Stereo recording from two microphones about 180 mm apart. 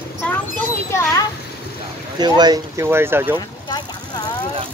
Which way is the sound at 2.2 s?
20° right (ahead or behind).